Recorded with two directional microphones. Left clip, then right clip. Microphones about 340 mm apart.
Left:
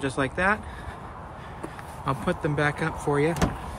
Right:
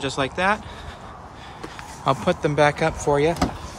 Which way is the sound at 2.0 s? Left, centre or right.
Centre.